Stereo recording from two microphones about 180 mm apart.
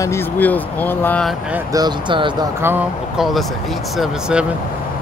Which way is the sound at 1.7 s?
25° right (ahead or behind).